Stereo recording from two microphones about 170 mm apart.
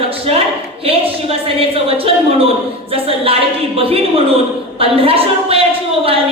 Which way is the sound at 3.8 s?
35° right (ahead or behind).